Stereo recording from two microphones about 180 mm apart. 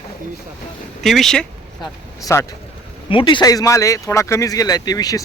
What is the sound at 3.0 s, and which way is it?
Speech, 30° left (ahead or behind).